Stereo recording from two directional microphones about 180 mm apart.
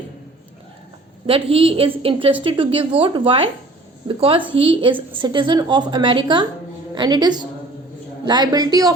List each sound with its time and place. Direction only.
1.3 s a woman's voice: 30° right (ahead or behind)